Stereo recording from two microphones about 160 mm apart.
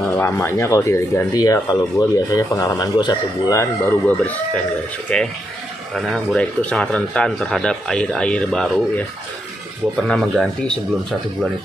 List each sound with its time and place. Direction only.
0.0 s speech: 15° left (ahead or behind)
3.8 s speech: 10° left (ahead or behind)
10.0 s speech: centre (ahead or behind)